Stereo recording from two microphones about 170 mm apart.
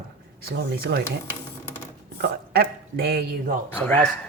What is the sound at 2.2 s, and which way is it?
Speech, 65° right (ahead or behind).